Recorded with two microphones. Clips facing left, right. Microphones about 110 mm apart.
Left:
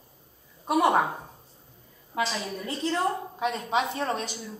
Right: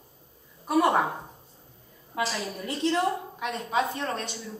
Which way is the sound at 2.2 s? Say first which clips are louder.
Even; 5° right (ahead or behind).